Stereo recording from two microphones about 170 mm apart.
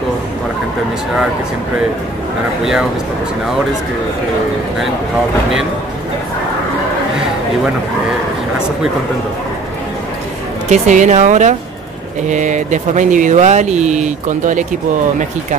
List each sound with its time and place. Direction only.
10.7 s speech: 45° right (ahead or behind)